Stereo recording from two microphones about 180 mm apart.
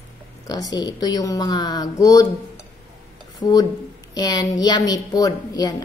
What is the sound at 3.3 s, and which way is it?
Speech, 20° left (ahead or behind).